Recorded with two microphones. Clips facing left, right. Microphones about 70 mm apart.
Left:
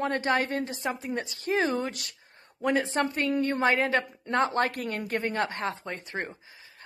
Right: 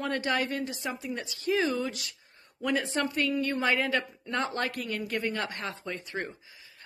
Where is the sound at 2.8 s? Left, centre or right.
Left.